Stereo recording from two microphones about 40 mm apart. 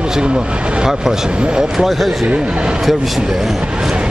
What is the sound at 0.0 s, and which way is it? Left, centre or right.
Vehicle, right.